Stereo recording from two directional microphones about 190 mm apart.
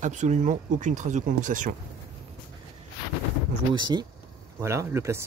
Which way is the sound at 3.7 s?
25° right (ahead or behind).